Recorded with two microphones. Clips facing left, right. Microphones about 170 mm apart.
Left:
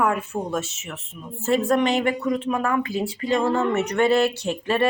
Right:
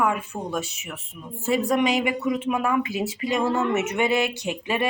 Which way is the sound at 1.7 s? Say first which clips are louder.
Left 1 dB; 15° right (ahead or behind).